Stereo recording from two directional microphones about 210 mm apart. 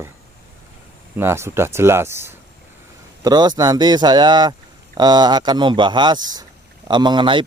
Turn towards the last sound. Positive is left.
turn(degrees=-20)  # may be behind; listen again after turning